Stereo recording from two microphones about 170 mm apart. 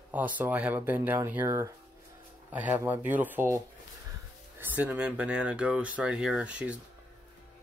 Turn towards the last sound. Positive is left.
turn(degrees=-5)  # may be behind; listen again after turning